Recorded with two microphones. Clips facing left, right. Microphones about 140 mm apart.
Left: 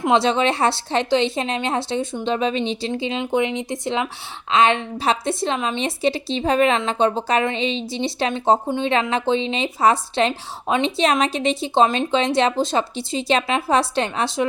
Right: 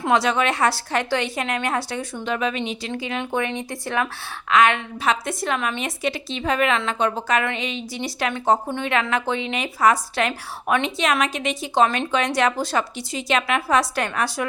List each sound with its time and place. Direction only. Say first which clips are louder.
0.0 s a woman's voice: left 2 dB; 25° left (ahead or behind)